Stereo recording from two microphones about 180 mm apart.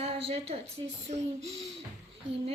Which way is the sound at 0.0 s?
35° right (ahead or behind).